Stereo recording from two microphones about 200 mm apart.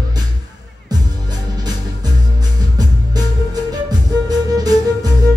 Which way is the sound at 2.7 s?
20° right (ahead or behind).